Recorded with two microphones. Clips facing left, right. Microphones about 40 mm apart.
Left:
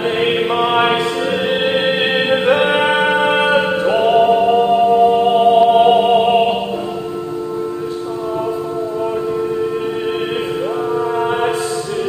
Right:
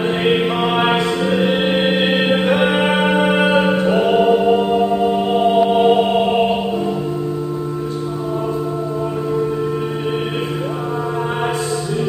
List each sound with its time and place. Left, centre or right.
0.2 s music: centre